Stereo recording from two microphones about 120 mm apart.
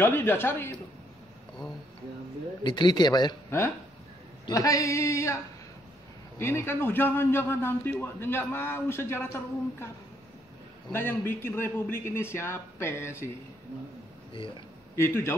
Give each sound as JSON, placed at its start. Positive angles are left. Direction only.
{"t": 0.0, "sound": "a man's voice", "side_deg": 20}
{"t": 2.6, "sound": "speech", "side_deg": 40}
{"t": 3.4, "sound": "a man's voice", "side_deg": 20}
{"t": 10.9, "sound": "a man's voice", "side_deg": 20}
{"t": 15.0, "sound": "a man's voice", "side_deg": 20}